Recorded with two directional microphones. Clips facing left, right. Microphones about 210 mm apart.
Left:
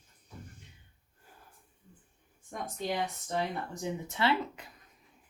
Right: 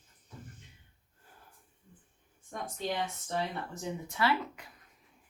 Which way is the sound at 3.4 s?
20° left (ahead or behind).